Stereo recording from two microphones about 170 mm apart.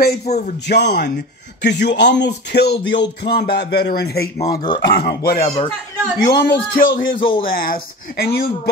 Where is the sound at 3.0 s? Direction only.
75° left (ahead or behind).